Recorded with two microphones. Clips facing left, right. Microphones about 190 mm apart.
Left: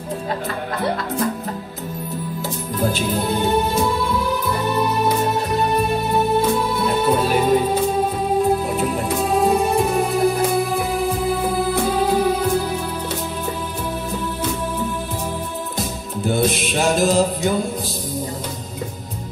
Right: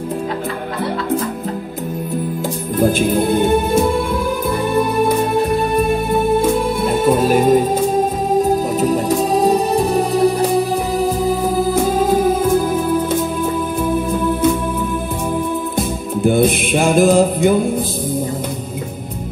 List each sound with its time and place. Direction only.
2.8 s music: 50° right (ahead or behind)
6.8 s music: 50° right (ahead or behind)
16.3 s music: 55° right (ahead or behind)